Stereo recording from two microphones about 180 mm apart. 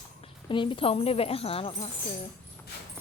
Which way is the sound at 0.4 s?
30° left (ahead or behind).